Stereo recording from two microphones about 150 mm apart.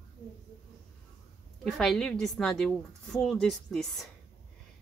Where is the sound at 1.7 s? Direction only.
Centre (ahead or behind).